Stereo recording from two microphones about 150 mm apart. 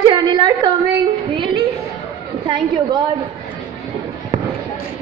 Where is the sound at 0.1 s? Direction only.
30° right (ahead or behind).